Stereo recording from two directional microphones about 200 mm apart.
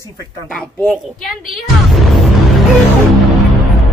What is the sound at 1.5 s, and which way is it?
Music, centre (ahead or behind).